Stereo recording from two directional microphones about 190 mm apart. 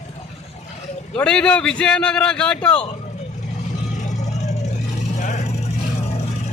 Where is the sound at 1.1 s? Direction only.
5° left (ahead or behind).